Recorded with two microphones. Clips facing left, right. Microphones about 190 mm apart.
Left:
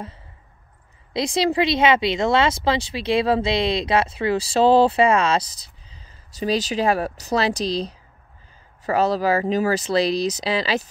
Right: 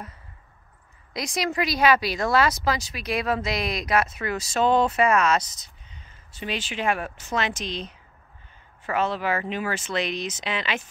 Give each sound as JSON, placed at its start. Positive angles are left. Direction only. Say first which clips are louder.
{"t": 1.1, "sound": "speech", "louder": "left 7 dB", "side_deg": 30}